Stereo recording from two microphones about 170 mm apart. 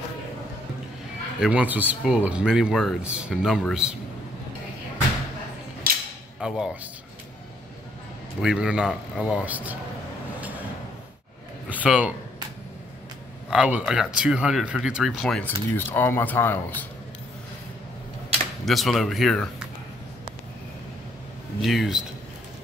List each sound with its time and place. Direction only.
1.4 s speech: 10° right (ahead or behind)
5.9 s cap gun: 60° right (ahead or behind)
6.4 s speech: 5° right (ahead or behind)
8.4 s speech: 5° right (ahead or behind)
11.7 s a man's voice: 10° right (ahead or behind)
13.5 s speech: 5° right (ahead or behind); by 16.5 s 15° left (ahead or behind)
18.7 s speech: centre (ahead or behind)
21.5 s speech: centre (ahead or behind)